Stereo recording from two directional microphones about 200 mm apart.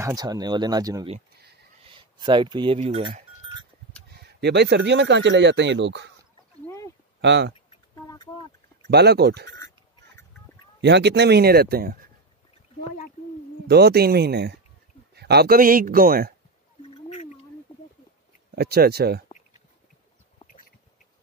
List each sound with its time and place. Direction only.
0.0 s speech: 20° right (ahead or behind)
4.1 s speech: 55° right (ahead or behind)
7.2 s speech: 60° right (ahead or behind)
7.7 s a sound: 20° left (ahead or behind)
8.9 s speech: 55° right (ahead or behind)
10.8 s speech: 60° right (ahead or behind)
13.7 s speech: 55° right (ahead or behind)
16.8 s a sound: 30° left (ahead or behind)
18.5 s speech: 50° right (ahead or behind)